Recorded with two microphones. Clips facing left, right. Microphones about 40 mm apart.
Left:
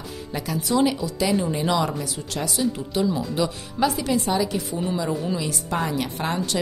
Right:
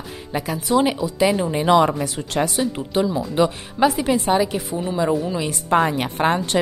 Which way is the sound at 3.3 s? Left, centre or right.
Right.